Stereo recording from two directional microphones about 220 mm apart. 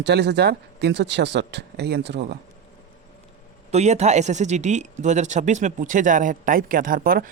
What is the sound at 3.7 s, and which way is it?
Speech, 30° right (ahead or behind).